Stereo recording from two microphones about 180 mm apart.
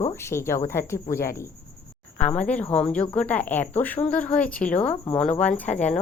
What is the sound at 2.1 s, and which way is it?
A woman's voice, 5° left (ahead or behind).